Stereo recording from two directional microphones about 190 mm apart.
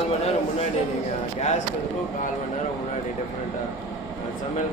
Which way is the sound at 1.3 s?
40° left (ahead or behind).